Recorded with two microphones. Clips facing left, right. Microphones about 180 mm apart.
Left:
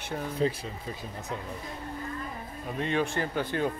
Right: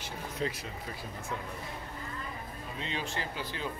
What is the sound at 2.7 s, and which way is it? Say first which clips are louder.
Speech: left 9 dB; 55° left (ahead or behind).